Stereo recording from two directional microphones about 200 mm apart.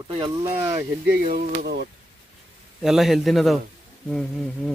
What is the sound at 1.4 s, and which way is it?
Speech, 55° right (ahead or behind).